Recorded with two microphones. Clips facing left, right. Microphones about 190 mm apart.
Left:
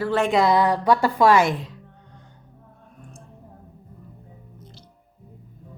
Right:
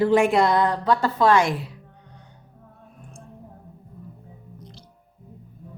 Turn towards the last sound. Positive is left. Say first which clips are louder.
# right 2 dB
turn(degrees=5)  # may be behind; listen again after turning